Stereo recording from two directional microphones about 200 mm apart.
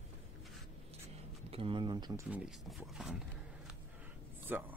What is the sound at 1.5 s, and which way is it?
Speech, 25° right (ahead or behind).